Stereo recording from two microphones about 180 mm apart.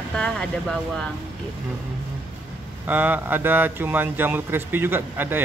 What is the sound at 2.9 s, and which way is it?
A man's voice, 10° right (ahead or behind).